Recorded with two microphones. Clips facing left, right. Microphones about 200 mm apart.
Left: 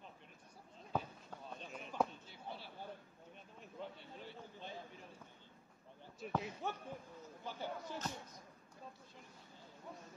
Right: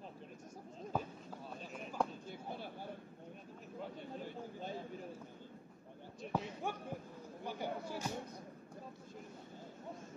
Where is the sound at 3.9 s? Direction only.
50° right (ahead or behind).